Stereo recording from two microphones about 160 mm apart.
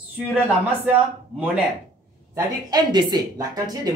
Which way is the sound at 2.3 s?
25° right (ahead or behind).